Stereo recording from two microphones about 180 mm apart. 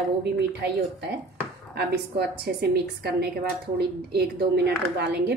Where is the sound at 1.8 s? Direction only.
65° right (ahead or behind).